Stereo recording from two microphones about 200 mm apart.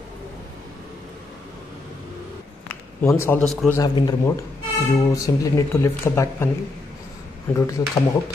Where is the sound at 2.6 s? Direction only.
15° left (ahead or behind).